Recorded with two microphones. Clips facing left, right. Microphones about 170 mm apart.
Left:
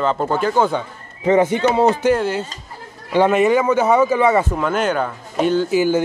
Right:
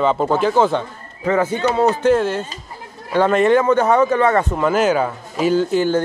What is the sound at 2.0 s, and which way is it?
Speech, centre (ahead or behind).